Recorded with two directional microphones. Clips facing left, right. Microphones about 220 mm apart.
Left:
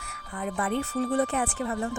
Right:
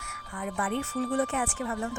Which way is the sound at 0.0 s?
35° left (ahead or behind).